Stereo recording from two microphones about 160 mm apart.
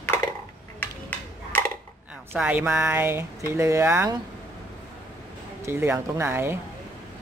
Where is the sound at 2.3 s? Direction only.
10° right (ahead or behind).